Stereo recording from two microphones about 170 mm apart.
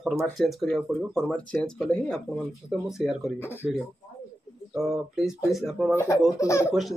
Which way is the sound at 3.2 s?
15° left (ahead or behind).